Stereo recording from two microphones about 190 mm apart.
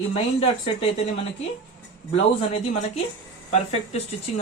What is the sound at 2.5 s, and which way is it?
Speech, 35° left (ahead or behind).